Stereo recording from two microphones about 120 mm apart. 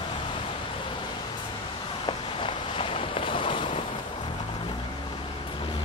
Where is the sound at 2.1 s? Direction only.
45° left (ahead or behind).